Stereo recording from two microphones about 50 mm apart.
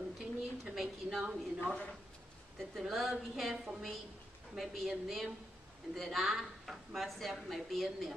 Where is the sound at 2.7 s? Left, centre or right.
Centre.